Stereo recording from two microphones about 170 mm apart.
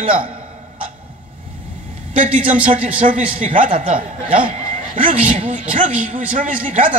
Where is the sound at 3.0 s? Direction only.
45° right (ahead or behind).